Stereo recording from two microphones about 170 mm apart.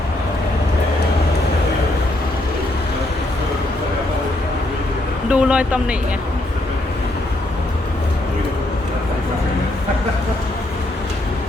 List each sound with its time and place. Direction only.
5.3 s speech: 5° right (ahead or behind)